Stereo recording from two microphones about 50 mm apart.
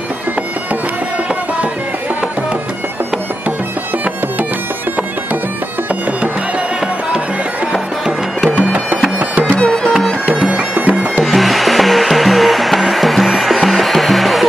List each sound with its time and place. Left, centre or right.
10.3 s bagpipes: right
11.2 s hair dryer: centre